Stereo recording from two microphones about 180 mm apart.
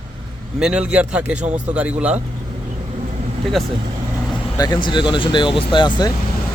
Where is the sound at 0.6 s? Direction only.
5° right (ahead or behind).